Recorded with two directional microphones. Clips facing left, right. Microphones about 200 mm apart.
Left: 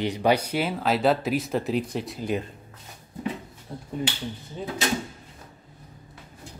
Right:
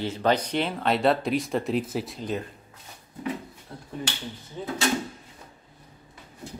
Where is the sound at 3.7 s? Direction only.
15° left (ahead or behind).